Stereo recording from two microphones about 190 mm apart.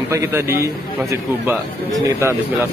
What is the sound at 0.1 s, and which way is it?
A man's voice, 15° right (ahead or behind).